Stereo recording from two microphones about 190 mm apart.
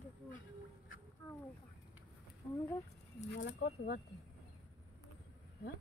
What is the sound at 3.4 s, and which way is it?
Speech, 60° left (ahead or behind).